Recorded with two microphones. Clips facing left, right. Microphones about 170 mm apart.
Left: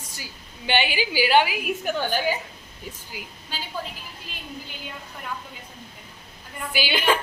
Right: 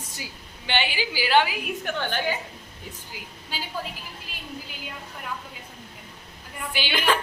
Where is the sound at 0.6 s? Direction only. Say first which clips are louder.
Left 3 dB; 15° left (ahead or behind).